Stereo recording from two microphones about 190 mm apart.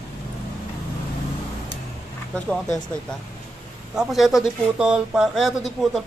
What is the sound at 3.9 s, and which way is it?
Speech, centre (ahead or behind).